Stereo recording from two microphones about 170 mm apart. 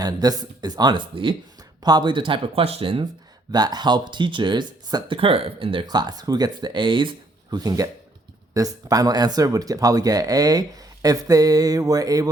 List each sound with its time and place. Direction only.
0.0 s speech: 25° right (ahead or behind)